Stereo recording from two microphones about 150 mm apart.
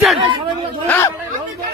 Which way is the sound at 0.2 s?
35° right (ahead or behind).